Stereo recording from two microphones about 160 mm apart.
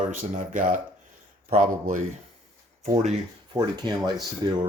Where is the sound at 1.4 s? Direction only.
45° right (ahead or behind).